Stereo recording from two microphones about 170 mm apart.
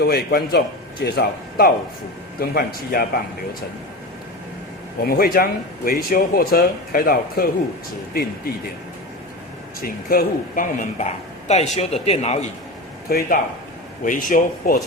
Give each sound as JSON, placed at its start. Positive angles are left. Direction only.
{"t": 0.0, "sound": "speech", "side_deg": 75}
{"t": 5.0, "sound": "speech", "side_deg": 60}
{"t": 9.8, "sound": "a woman's voice", "side_deg": 60}
{"t": 13.1, "sound": "speech", "side_deg": 65}